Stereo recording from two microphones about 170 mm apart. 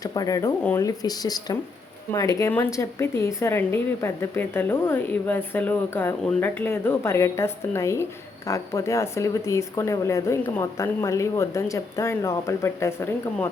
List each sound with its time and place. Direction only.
0.0 s a woman's voice: 20° left (ahead or behind)